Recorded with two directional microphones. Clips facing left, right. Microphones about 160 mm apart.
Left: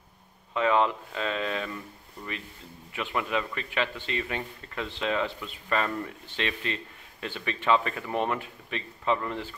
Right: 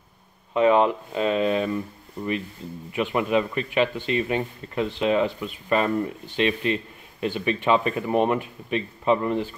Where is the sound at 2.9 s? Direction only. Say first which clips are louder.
Right 7 dB; 20° right (ahead or behind).